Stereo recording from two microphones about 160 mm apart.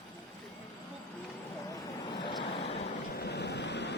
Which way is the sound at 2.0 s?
30° left (ahead or behind).